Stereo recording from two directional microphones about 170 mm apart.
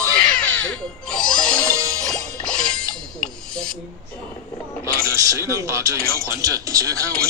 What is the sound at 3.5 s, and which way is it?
Speech, 5° left (ahead or behind).